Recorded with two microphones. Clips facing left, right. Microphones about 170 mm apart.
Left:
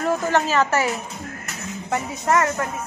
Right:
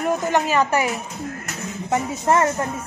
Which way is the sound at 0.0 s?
15° right (ahead or behind).